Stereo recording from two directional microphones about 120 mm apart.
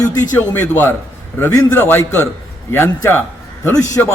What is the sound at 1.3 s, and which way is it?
A man's voice, 20° left (ahead or behind).